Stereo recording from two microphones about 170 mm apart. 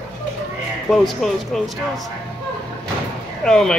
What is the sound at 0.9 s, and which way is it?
Speech, centre (ahead or behind).